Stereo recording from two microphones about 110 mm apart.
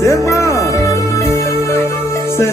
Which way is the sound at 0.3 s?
30° left (ahead or behind).